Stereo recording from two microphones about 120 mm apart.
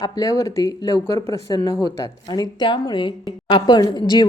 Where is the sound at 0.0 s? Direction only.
30° left (ahead or behind).